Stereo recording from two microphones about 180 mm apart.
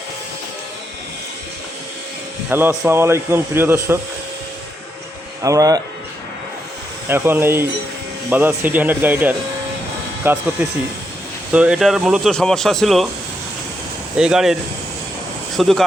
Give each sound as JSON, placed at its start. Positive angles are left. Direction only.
{"t": 2.5, "sound": "speech", "side_deg": -10}
{"t": 5.4, "sound": "speech", "side_deg": -20}
{"t": 7.1, "sound": "speech", "side_deg": -10}
{"t": 14.2, "sound": "speech", "side_deg": -5}